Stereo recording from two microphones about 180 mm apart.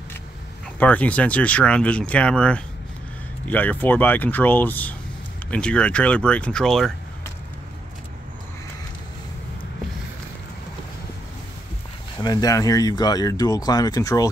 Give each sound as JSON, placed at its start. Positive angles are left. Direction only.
{"t": 0.7, "sound": "speech", "side_deg": 10}
{"t": 12.2, "sound": "speech", "side_deg": 20}